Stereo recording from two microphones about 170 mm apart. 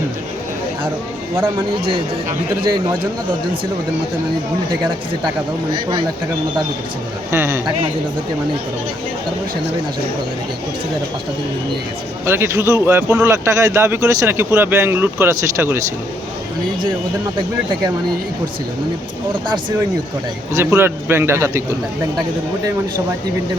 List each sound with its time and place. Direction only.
7.3 s a man's voice: 15° right (ahead or behind)
12.2 s a man's voice: 15° right (ahead or behind)
20.5 s a man's voice: 15° right (ahead or behind)